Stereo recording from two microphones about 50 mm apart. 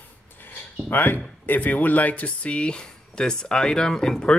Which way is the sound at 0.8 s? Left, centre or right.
Left.